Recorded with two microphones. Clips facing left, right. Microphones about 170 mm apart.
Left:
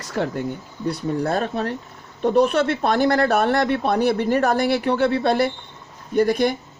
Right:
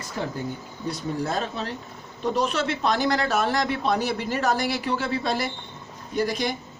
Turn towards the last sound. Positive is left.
turn(degrees=55)  # may be behind; listen again after turning